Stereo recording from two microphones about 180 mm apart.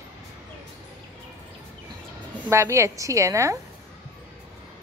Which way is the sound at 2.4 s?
15° right (ahead or behind).